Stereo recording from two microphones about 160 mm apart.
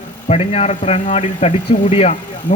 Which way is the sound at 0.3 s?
40° left (ahead or behind).